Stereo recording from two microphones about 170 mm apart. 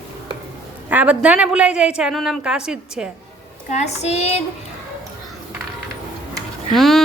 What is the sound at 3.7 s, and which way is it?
Child singing, 40° left (ahead or behind).